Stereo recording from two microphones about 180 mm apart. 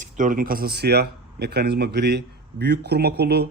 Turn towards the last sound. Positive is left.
turn(degrees=-65)  # may be behind; listen again after turning